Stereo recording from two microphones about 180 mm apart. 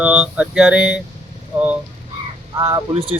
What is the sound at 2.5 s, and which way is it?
Speech, 15° right (ahead or behind).